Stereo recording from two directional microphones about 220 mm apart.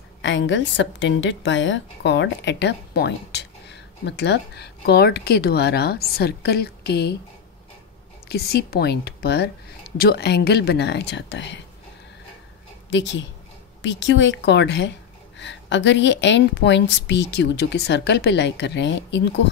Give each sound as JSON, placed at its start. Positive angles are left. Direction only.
{"t": 0.2, "sound": "a woman's voice", "side_deg": 55}
{"t": 8.3, "sound": "a woman's voice", "side_deg": 45}
{"t": 12.9, "sound": "a woman's voice", "side_deg": 55}